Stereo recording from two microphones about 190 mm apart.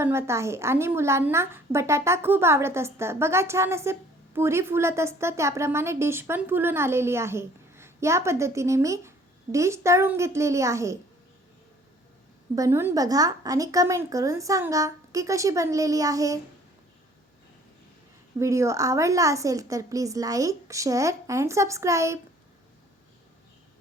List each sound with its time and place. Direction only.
0.0 s a woman's voice: 15° right (ahead or behind)
12.5 s a woman's voice: 15° right (ahead or behind)
18.3 s a woman's voice: 15° right (ahead or behind)